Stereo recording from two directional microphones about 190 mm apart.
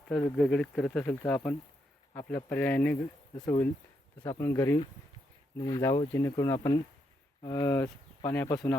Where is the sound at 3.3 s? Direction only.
20° left (ahead or behind).